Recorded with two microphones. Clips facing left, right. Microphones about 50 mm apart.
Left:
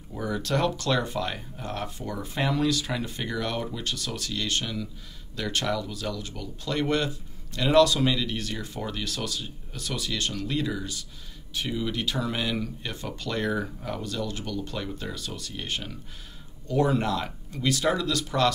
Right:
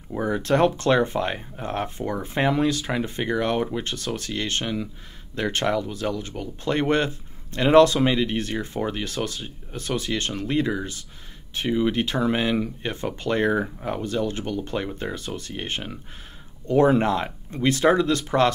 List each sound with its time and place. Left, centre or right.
0.1 s speech: right